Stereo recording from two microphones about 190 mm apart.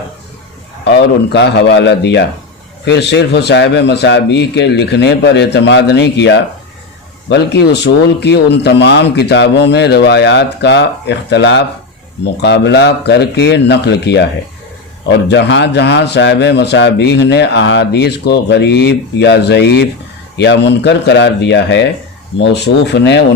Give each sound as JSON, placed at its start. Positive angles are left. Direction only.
{"t": 0.9, "sound": "a man's voice", "side_deg": 65}